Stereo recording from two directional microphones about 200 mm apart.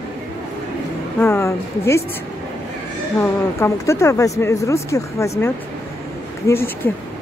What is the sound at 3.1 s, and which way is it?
Speech, 15° left (ahead or behind).